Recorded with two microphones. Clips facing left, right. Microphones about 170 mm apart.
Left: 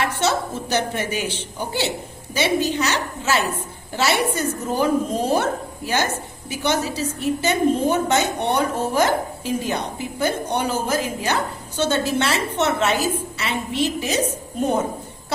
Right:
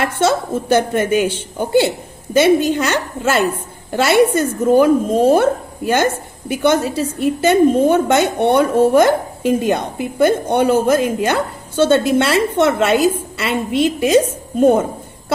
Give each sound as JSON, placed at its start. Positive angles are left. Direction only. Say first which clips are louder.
{"t": 0.0, "sound": "a woman's voice", "louder": "right 5 dB", "side_deg": -50}